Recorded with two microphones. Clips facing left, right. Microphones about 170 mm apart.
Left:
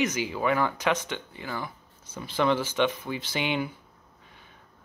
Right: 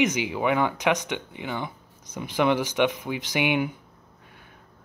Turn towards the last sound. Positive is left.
turn(degrees=-15)  # may be behind; listen again after turning